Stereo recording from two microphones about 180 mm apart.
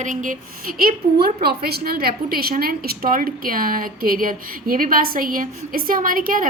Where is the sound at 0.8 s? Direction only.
55° right (ahead or behind).